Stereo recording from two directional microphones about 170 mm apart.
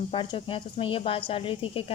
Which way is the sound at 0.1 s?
30° left (ahead or behind).